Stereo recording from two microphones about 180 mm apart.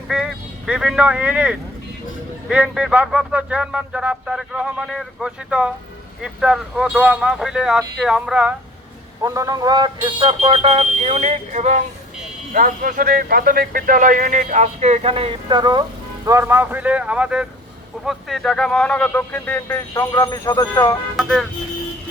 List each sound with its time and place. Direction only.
0.1 s speech: 5° right (ahead or behind)
9.2 s speech: 20° right (ahead or behind); by 11.8 s 40° right (ahead or behind)
12.5 s speech: 50° right (ahead or behind); by 20.9 s 20° left (ahead or behind)
21.2 s speech: centre (ahead or behind)